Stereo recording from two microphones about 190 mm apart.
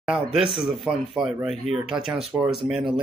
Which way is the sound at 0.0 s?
5° right (ahead or behind).